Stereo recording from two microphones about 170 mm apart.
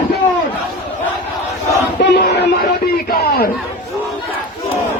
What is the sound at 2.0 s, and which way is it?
Battle cry, 75° left (ahead or behind).